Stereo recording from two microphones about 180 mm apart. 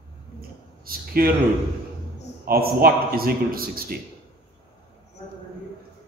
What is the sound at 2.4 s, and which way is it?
A man's voice, 55° right (ahead or behind).